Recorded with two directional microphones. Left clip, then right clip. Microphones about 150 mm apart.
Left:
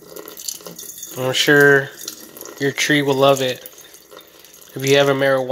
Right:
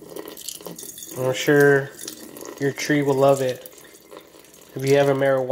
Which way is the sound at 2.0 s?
15° right (ahead or behind).